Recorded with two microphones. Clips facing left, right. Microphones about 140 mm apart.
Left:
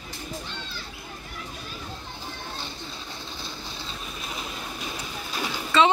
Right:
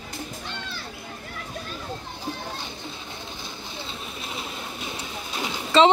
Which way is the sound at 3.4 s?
20° right (ahead or behind).